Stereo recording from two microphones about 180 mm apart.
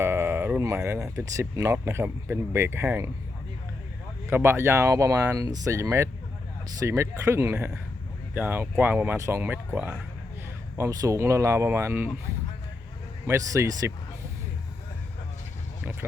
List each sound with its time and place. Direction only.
0.0 s speech: 15° right (ahead or behind)
4.3 s speech: 10° right (ahead or behind)
13.2 s speech: 15° right (ahead or behind)
15.8 s a sound: 10° right (ahead or behind)